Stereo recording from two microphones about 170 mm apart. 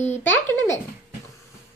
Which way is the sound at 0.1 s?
15° left (ahead or behind).